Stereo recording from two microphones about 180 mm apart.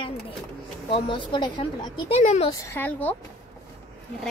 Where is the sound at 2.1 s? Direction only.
35° left (ahead or behind).